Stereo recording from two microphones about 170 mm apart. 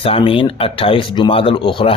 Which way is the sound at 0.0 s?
30° left (ahead or behind).